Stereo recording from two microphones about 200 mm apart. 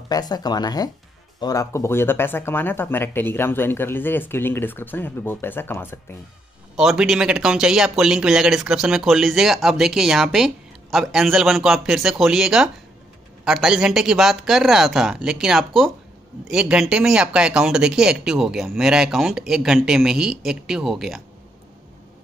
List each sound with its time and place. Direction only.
0.1 s speech: 20° left (ahead or behind)
6.8 s speech: centre (ahead or behind)